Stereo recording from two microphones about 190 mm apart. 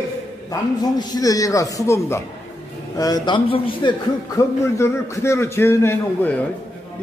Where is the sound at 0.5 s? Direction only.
20° left (ahead or behind).